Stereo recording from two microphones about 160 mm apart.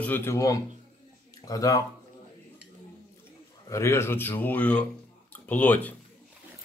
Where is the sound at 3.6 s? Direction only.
20° left (ahead or behind).